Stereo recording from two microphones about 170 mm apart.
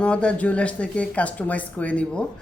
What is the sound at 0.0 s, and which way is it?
A woman's voice, 5° left (ahead or behind).